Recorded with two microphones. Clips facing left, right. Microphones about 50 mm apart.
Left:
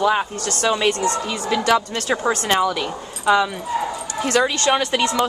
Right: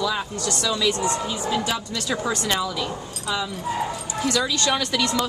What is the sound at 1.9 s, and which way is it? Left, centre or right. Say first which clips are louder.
Speech: left 5 dB; left.